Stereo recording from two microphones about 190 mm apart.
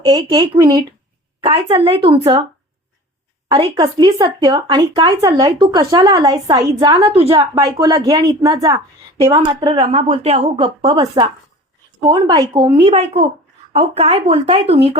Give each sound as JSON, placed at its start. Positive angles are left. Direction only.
{"t": 0.0, "sound": "speech", "side_deg": -20}
{"t": 3.5, "sound": "speech", "side_deg": -20}
{"t": 7.1, "sound": "speech", "side_deg": -30}
{"t": 7.5, "sound": "a woman's voice", "side_deg": -20}
{"t": 9.5, "sound": "speech", "side_deg": -25}